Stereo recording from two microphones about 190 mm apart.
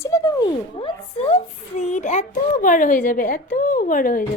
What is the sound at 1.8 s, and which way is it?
A woman's voice, 40° left (ahead or behind).